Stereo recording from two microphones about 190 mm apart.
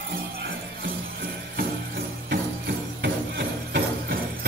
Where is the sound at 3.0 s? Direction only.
65° right (ahead or behind).